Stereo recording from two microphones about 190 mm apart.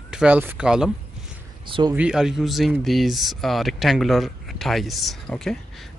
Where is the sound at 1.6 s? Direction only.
25° right (ahead or behind).